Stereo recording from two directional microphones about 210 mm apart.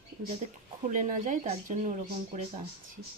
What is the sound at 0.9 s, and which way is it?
Speech, 35° right (ahead or behind).